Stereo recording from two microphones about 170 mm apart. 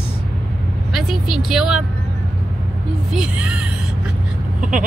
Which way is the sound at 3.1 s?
5° right (ahead or behind).